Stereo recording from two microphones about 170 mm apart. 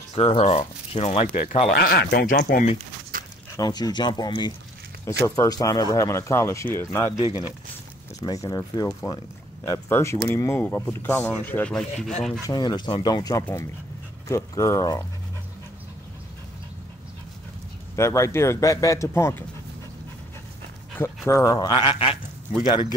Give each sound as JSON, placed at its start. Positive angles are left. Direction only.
{"t": 0.1, "sound": "speech", "side_deg": 35}
{"t": 1.7, "sound": "speech", "side_deg": 70}
{"t": 3.1, "sound": "a sound", "side_deg": -55}
{"t": 3.5, "sound": "speech", "side_deg": 25}
{"t": 7.2, "sound": "speech", "side_deg": -15}
{"t": 8.2, "sound": "speech", "side_deg": 20}
{"t": 12.4, "sound": "speech", "side_deg": 25}
{"t": 17.9, "sound": "speech", "side_deg": 15}
{"t": 21.3, "sound": "speech", "side_deg": 20}